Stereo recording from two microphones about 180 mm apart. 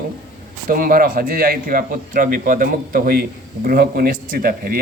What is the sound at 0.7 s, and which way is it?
A man's voice, 50° right (ahead or behind).